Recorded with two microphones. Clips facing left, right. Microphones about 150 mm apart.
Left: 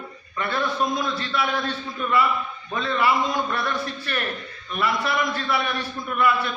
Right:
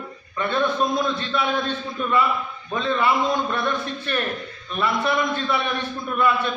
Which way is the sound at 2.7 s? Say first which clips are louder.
Right 1 dB; 20° right (ahead or behind).